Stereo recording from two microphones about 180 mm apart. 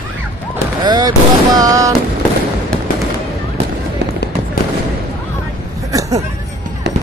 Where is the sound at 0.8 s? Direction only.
20° right (ahead or behind).